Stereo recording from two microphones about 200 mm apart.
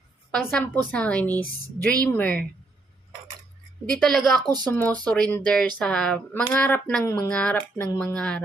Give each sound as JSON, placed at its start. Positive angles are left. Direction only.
{"t": 0.3, "sound": "speech", "side_deg": 10}
{"t": 3.9, "sound": "a woman's voice", "side_deg": 0}
{"t": 4.4, "sound": "speech", "side_deg": -20}
{"t": 4.7, "sound": "speech", "side_deg": 10}